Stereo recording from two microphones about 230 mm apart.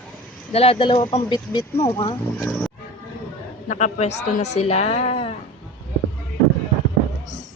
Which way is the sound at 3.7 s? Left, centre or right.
Left.